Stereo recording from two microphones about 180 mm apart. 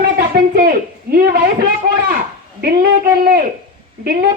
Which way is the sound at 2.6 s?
55° right (ahead or behind).